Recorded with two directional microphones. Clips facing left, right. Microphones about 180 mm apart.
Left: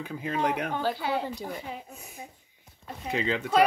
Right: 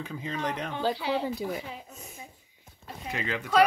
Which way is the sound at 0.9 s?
50° left (ahead or behind).